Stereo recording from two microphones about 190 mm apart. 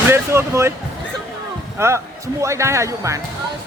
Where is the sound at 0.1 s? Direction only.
15° right (ahead or behind).